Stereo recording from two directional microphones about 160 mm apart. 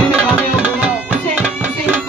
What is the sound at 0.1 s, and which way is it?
Tabla, 10° right (ahead or behind).